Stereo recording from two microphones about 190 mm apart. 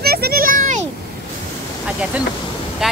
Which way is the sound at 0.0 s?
55° right (ahead or behind).